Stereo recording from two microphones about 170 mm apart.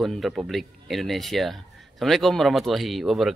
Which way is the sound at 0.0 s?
Centre (ahead or behind).